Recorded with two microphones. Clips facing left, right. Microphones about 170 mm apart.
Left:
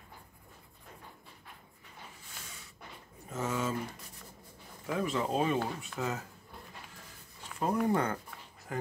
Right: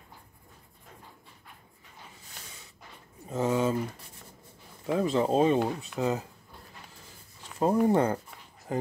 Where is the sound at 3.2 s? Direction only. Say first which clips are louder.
Right 7 dB; 35° right (ahead or behind).